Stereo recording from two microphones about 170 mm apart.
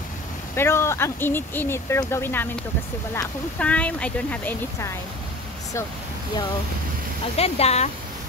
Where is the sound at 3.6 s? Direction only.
5° left (ahead or behind).